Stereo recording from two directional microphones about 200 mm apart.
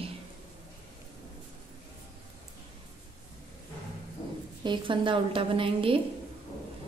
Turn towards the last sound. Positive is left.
turn(degrees=-25)  # may be behind; listen again after turning